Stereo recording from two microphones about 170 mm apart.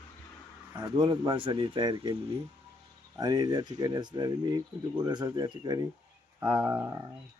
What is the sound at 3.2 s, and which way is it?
Speech, 25° right (ahead or behind).